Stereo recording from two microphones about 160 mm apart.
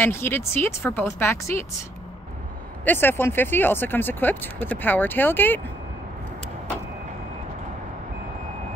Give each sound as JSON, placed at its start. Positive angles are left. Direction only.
{"t": 0.0, "sound": "speech", "side_deg": 15}
{"t": 2.8, "sound": "speech", "side_deg": 10}